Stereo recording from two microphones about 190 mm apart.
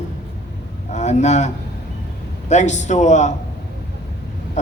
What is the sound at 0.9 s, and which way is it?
A man's voice, 35° left (ahead or behind).